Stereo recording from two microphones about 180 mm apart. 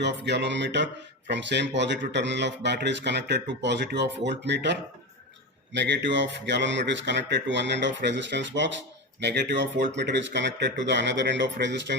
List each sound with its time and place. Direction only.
0.0 s speech: 70° right (ahead or behind)